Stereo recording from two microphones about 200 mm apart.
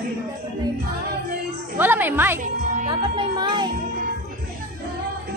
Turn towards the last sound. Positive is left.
turn(degrees=-20)  # may be behind; listen again after turning